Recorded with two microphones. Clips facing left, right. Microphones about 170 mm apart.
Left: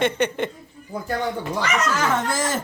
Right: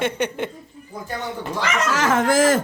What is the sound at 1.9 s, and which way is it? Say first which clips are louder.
Speech: right 5 dB; 85° right.